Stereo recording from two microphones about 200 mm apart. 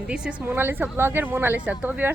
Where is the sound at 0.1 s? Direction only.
5° right (ahead or behind).